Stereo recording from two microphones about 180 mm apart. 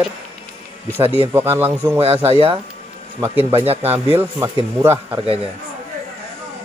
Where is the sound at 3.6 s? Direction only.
35° right (ahead or behind).